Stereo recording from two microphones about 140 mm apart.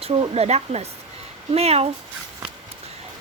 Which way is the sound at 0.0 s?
40° right (ahead or behind).